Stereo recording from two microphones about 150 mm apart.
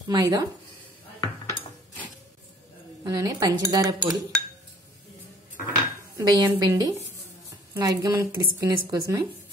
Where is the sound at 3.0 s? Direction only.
25° right (ahead or behind).